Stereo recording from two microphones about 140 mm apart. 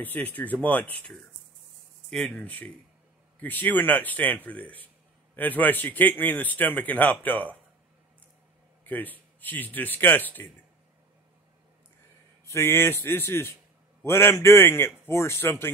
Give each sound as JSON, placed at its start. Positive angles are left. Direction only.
{"t": 0.0, "sound": "a man's voice", "side_deg": 10}
{"t": 8.8, "sound": "a man's voice", "side_deg": 10}
{"t": 12.4, "sound": "a man's voice", "side_deg": 20}